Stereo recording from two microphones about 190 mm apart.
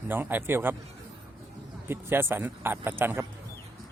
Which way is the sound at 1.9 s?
10° right (ahead or behind).